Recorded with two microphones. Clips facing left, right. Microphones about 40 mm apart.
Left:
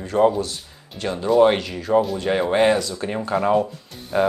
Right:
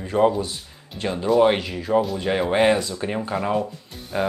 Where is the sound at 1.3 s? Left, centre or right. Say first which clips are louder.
Left 2 dB; centre.